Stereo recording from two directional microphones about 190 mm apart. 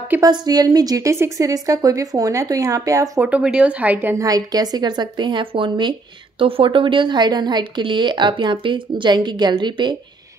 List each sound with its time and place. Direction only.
0.1 s a woman's voice: 20° right (ahead or behind)